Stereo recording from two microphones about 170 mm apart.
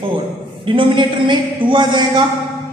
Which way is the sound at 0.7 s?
30° right (ahead or behind).